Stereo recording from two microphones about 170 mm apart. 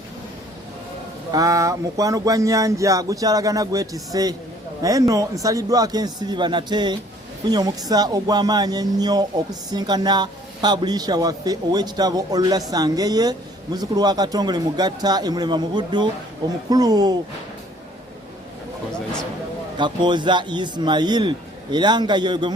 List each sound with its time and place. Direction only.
1.3 s speech: 20° right (ahead or behind)
19.7 s speech: 25° right (ahead or behind)